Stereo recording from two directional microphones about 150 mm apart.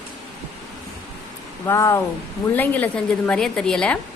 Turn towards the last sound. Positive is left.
turn(degrees=5)  # may be behind; listen again after turning